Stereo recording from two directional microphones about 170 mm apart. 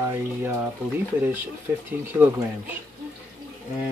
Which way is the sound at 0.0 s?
15° right (ahead or behind).